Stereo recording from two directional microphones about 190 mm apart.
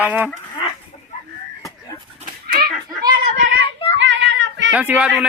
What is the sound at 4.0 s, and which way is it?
Child singing, 75° right (ahead or behind).